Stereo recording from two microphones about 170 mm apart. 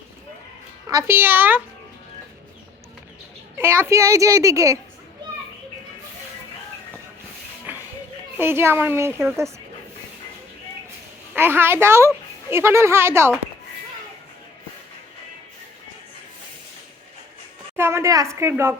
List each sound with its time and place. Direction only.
0.9 s a woman's voice: 15° right (ahead or behind)
3.6 s a woman's voice: 15° right (ahead or behind)
8.4 s a woman's voice: 15° right (ahead or behind)
11.3 s a woman's voice: 15° right (ahead or behind)
17.7 s a woman's voice: 15° right (ahead or behind)